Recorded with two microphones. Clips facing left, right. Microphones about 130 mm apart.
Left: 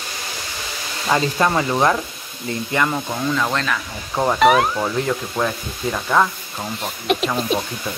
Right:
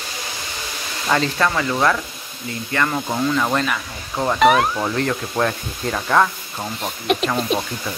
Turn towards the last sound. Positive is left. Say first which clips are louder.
# even
turn(degrees=0)  # may be behind; listen again after turning